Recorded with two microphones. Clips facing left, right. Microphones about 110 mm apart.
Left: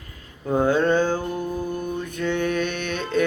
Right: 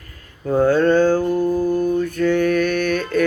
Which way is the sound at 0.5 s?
15° left (ahead or behind).